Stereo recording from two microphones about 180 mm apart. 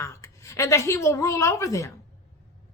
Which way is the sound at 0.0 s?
15° left (ahead or behind).